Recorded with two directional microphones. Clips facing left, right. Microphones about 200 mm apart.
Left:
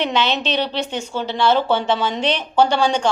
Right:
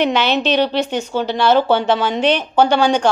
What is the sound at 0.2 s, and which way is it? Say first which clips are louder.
A woman's voice: right 5 dB; 25° left (ahead or behind).